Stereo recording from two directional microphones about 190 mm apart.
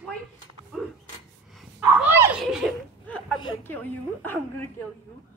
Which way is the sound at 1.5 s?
10° right (ahead or behind).